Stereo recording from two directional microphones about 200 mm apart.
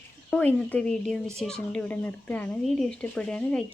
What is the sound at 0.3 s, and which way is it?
Speech, 5° left (ahead or behind).